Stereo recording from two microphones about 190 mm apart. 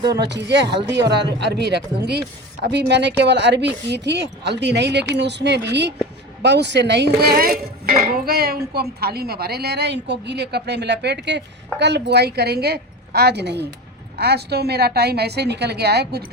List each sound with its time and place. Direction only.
0.1 s speech: 65° right (ahead or behind)